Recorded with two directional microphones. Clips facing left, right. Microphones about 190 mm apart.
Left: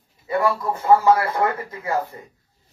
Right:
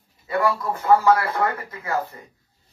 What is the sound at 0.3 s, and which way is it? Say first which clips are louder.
Speech: left 1 dB; 25° left (ahead or behind).